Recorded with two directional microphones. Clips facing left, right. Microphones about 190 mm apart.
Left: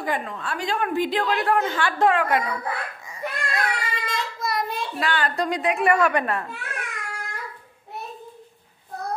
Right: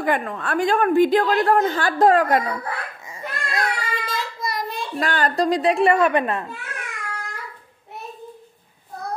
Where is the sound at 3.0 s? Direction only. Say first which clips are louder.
Left 1 dB; 25° right (ahead or behind).